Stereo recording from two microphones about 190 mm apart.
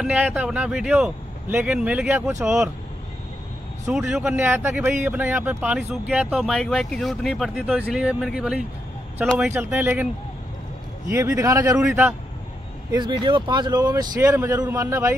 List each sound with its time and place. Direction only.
0.0 s speech: 5° right (ahead or behind)
3.9 s speech: 5° right (ahead or behind)
11.1 s speech: 15° right (ahead or behind)
12.9 s speech: 25° right (ahead or behind)